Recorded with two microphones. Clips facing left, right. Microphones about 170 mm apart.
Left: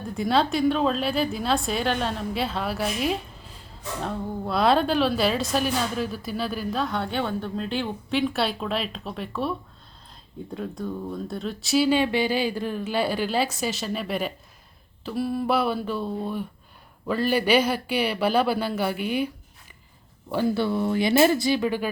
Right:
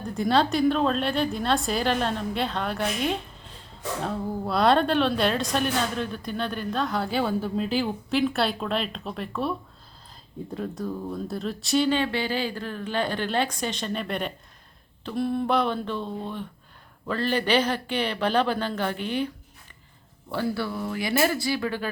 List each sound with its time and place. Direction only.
0.0 s a woman's voice: centre (ahead or behind)
20.3 s speech: 20° left (ahead or behind)